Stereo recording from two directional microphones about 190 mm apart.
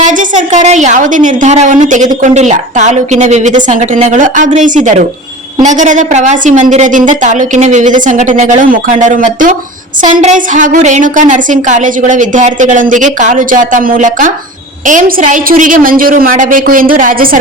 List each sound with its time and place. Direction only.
0.0 s a woman's voice: 40° right (ahead or behind)